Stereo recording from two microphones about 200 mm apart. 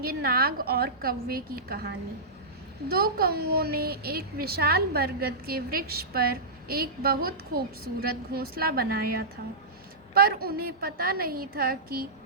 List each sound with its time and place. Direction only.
0.0 s a woman's voice: 50° right (ahead or behind)
2.9 s a woman's voice: 50° right (ahead or behind)